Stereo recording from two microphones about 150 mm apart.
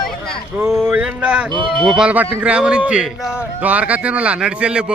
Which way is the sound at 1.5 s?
30° right (ahead or behind).